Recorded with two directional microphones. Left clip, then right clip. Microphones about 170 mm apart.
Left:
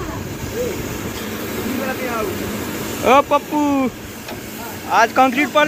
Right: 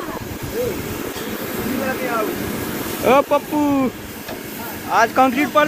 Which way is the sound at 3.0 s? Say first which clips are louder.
Left 2 dB; centre (ahead or behind).